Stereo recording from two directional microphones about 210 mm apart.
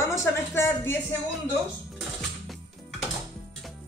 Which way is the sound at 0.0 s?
15° left (ahead or behind).